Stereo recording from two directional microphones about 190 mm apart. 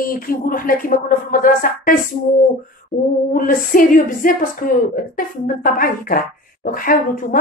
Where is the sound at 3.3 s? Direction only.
45° left (ahead or behind).